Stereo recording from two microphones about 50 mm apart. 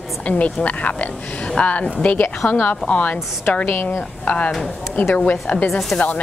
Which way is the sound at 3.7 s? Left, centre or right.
Left.